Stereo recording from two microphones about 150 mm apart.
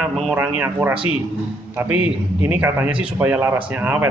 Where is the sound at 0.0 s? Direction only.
5° right (ahead or behind).